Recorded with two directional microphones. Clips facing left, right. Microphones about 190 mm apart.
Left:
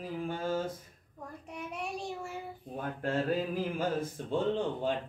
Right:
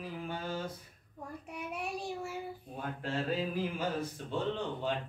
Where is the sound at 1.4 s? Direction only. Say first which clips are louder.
Left 1 dB; 5° right (ahead or behind).